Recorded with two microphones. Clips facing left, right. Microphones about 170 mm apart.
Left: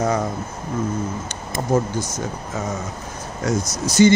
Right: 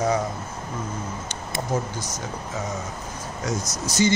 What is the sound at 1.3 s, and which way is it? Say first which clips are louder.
Speech: left 6 dB; 50° left (ahead or behind).